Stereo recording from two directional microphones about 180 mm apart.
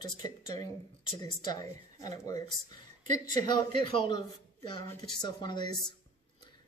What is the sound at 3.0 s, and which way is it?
Speech, 45° right (ahead or behind).